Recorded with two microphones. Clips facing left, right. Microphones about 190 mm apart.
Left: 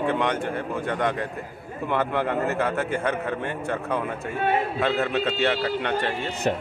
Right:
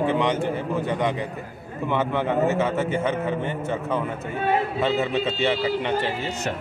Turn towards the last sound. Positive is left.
turn(degrees=0)  # may be behind; listen again after turning